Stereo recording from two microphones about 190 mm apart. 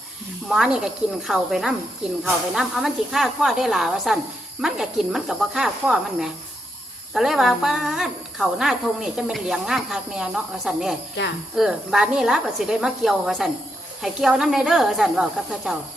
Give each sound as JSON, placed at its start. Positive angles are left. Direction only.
{"t": 0.4, "sound": "a woman's voice", "side_deg": 0}
{"t": 11.2, "sound": "speech", "side_deg": 70}
{"t": 11.5, "sound": "a woman's voice", "side_deg": 0}